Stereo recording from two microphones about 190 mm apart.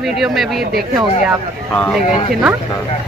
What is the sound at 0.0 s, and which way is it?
Speech, centre (ahead or behind).